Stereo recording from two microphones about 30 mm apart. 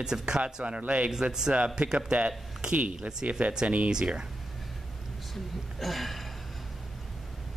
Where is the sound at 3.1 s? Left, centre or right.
Right.